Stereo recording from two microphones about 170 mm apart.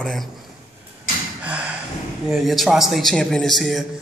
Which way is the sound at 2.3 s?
Centre (ahead or behind).